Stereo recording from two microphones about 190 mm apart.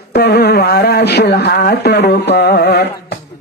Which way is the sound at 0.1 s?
60° left (ahead or behind).